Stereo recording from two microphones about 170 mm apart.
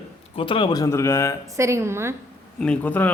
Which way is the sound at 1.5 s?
15° right (ahead or behind).